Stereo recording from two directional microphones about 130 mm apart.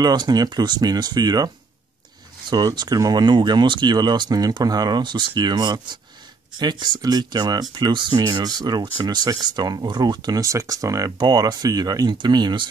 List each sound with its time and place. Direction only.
0.0 s speech: 30° right (ahead or behind)
2.5 s speech: 30° right (ahead or behind)